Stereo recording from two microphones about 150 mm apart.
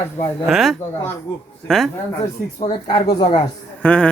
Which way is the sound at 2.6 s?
30° left (ahead or behind).